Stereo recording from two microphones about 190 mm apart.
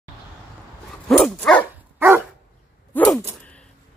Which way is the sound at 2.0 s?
10° right (ahead or behind).